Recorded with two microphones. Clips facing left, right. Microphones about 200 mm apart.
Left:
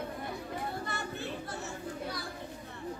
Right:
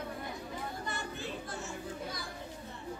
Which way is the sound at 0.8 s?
65° left (ahead or behind).